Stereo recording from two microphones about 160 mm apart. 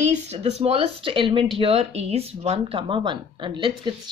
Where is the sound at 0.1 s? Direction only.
40° right (ahead or behind).